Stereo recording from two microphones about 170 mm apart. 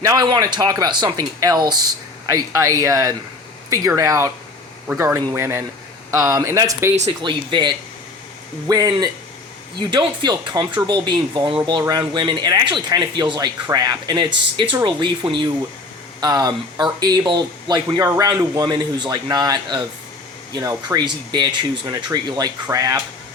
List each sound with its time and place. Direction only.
0.0 s speech: 20° right (ahead or behind)
7.2 s speech: 30° right (ahead or behind)